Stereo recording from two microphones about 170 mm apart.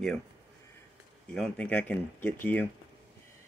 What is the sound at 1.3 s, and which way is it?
Speech, 5° left (ahead or behind).